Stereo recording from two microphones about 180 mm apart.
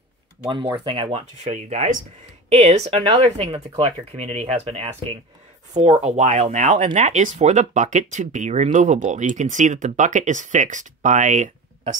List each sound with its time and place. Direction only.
0.5 s speech: 25° right (ahead or behind)
1.4 s speech: 40° right (ahead or behind)